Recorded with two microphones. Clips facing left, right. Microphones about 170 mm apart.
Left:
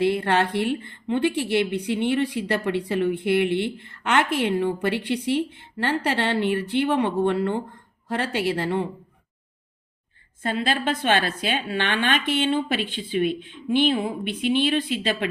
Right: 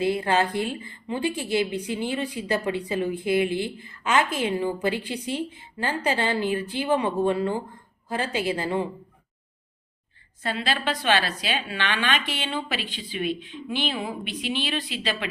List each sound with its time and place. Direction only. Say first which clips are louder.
0.0 s speech: left 2 dB; 65° left (ahead or behind)
10.4 s a woman's voice: left 3 dB; 50° left (ahead or behind)